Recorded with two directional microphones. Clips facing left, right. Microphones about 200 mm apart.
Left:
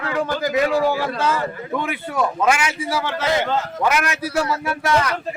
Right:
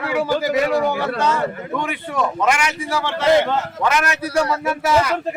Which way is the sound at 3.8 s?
10° left (ahead or behind).